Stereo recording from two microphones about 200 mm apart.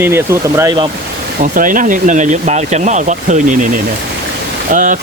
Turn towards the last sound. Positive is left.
turn(degrees=-40)  # may be behind; listen again after turning